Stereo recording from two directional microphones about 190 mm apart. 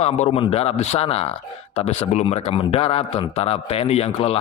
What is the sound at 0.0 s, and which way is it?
Speech, 30° left (ahead or behind).